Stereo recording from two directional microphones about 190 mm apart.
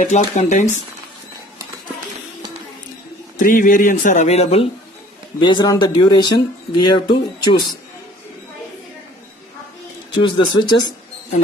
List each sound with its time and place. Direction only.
0.0 s speech: 40° left (ahead or behind)
3.3 s speech: 45° left (ahead or behind); by 7.8 s 25° left (ahead or behind)
10.1 s speech: 25° left (ahead or behind)